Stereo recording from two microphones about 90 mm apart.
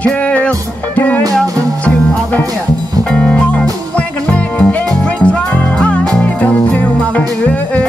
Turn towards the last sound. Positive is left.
turn(degrees=15)  # may be behind; listen again after turning